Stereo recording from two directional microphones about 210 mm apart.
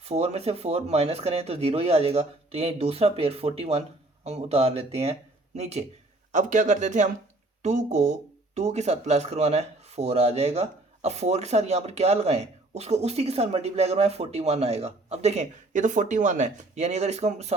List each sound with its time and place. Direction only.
0.0 s speech: 30° right (ahead or behind)